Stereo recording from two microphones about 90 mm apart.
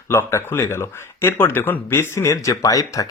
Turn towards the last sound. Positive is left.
turn(degrees=40)  # may be behind; listen again after turning